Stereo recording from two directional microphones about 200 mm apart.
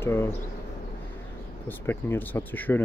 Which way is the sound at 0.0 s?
10° left (ahead or behind).